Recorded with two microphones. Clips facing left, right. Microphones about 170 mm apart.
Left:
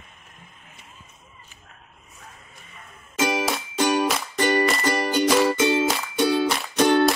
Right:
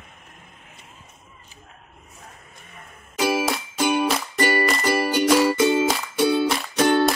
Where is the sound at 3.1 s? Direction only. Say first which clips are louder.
Right 2 dB; 5° right (ahead or behind).